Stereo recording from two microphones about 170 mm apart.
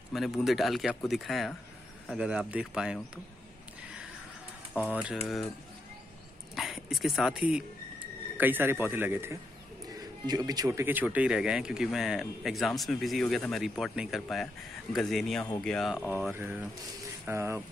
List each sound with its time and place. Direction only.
0.1 s speech: centre (ahead or behind)
4.9 s speech: 5° right (ahead or behind)
6.5 s speech: centre (ahead or behind)
17.3 s speech: 15° right (ahead or behind)